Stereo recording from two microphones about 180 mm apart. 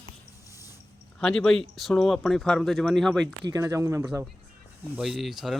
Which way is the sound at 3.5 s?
15° right (ahead or behind).